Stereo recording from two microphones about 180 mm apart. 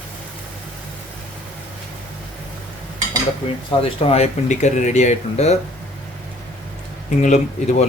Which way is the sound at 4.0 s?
35° left (ahead or behind).